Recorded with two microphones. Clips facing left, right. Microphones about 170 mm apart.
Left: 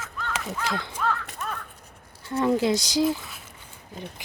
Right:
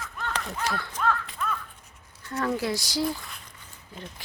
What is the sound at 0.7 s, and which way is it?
Speech, 15° left (ahead or behind).